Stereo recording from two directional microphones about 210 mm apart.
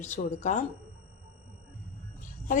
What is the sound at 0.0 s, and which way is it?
Speech, 35° left (ahead or behind).